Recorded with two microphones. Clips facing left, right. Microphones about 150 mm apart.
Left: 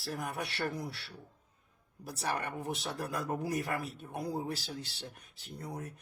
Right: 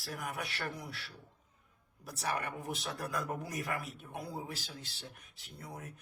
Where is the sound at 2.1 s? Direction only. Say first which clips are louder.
Left 1 dB; 30° left (ahead or behind).